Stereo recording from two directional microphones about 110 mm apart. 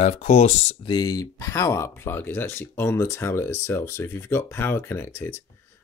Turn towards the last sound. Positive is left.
turn(degrees=20)  # may be behind; listen again after turning